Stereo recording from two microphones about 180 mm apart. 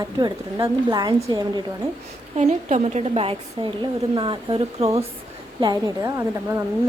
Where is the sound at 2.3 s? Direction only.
40° right (ahead or behind).